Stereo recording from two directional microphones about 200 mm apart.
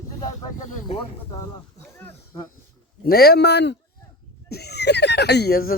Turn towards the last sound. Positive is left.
turn(degrees=50)  # may be behind; listen again after turning